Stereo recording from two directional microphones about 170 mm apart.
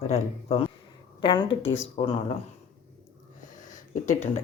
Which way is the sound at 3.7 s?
50° left (ahead or behind).